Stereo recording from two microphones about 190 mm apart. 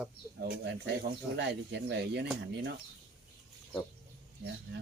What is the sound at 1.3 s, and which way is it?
Speech, 65° right (ahead or behind).